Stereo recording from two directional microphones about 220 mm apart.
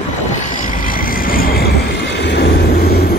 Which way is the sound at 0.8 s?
40° left (ahead or behind).